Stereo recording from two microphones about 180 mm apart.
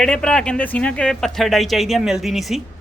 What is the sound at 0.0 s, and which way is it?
Speech, 5° left (ahead or behind).